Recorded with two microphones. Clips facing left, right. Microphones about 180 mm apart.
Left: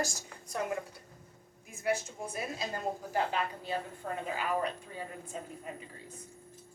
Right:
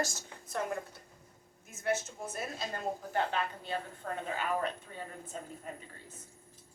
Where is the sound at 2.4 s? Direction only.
Centre (ahead or behind).